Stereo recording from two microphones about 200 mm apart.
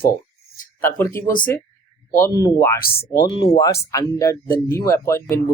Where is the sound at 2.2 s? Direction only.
15° left (ahead or behind).